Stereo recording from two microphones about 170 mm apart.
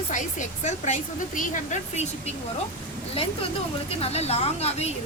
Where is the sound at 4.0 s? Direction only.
40° left (ahead or behind).